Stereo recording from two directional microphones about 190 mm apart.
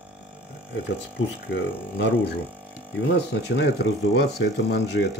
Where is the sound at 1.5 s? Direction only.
65° left (ahead or behind).